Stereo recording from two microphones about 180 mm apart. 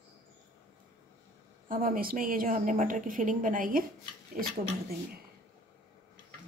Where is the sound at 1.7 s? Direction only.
50° right (ahead or behind).